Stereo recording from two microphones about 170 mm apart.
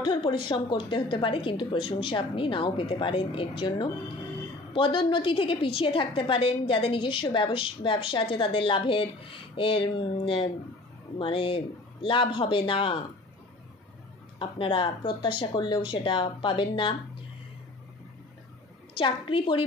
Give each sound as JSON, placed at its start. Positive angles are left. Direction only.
{"t": 0.0, "sound": "a woman's voice", "side_deg": 30}
{"t": 14.4, "sound": "speech", "side_deg": 30}
{"t": 18.9, "sound": "a woman's voice", "side_deg": 30}